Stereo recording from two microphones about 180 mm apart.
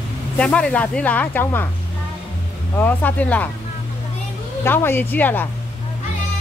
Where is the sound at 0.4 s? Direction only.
5° left (ahead or behind).